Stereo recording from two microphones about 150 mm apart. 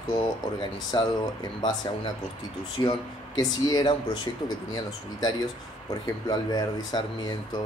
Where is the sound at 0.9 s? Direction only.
30° left (ahead or behind).